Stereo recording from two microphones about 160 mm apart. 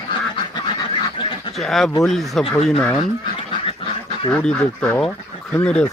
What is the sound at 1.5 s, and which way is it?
Speech, centre (ahead or behind).